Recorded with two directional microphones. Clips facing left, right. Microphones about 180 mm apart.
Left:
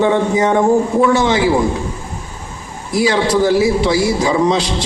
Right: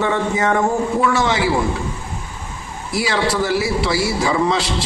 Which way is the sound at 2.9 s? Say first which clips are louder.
Left 5 dB; 15° left (ahead or behind).